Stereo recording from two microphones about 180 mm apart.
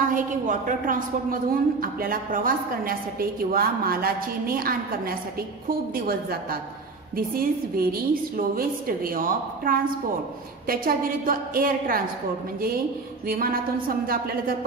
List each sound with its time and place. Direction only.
0.0 s a woman's voice: 45° right (ahead or behind)
13.3 s a woman's voice: 55° right (ahead or behind)